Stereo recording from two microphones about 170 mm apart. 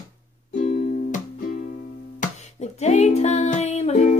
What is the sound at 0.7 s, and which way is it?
Music, 55° left (ahead or behind).